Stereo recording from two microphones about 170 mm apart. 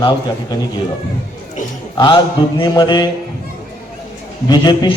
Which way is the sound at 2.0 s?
25° left (ahead or behind).